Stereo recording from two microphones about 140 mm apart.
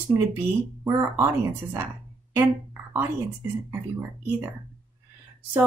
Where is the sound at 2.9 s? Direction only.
15° right (ahead or behind).